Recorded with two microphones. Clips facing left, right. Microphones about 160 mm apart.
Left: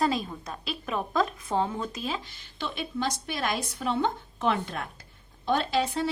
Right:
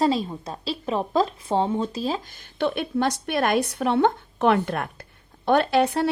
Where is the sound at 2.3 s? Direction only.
60° right (ahead or behind).